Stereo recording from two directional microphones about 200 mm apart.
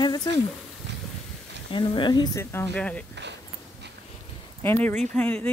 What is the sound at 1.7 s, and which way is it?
Speech, 25° left (ahead or behind).